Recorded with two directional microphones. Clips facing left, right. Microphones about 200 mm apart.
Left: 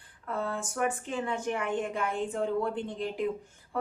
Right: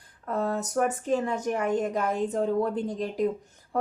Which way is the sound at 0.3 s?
40° right (ahead or behind).